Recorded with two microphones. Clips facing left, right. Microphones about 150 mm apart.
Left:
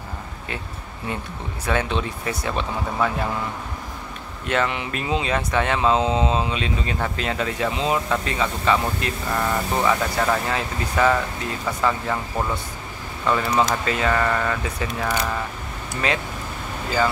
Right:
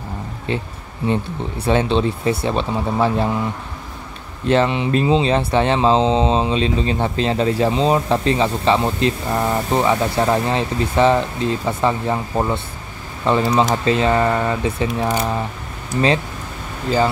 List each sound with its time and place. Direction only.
0.5 s speech: 30° right (ahead or behind)
4.5 s speech: 25° right (ahead or behind)